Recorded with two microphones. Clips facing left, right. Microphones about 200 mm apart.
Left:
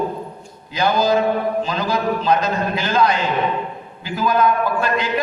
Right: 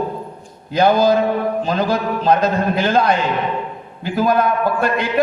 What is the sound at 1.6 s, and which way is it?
A man's voice, 55° right (ahead or behind).